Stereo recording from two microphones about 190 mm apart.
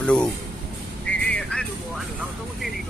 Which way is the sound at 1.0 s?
5° left (ahead or behind).